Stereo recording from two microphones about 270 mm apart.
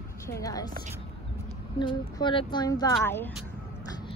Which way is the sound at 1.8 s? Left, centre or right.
Centre.